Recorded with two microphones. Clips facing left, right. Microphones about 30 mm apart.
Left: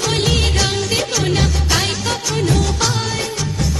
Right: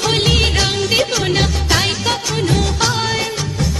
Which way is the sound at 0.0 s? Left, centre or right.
Centre.